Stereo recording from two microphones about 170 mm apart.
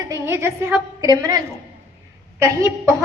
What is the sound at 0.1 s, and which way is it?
A woman's voice, 15° right (ahead or behind).